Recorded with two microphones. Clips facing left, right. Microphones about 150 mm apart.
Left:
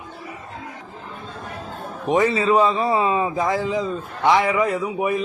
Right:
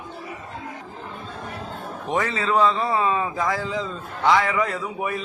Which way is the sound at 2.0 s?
20° left (ahead or behind).